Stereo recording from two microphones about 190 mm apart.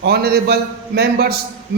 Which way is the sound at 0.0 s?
55° right (ahead or behind).